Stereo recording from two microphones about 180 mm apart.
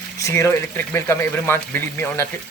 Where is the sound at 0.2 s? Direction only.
15° left (ahead or behind).